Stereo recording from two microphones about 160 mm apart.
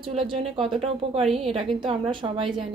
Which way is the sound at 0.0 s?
35° right (ahead or behind).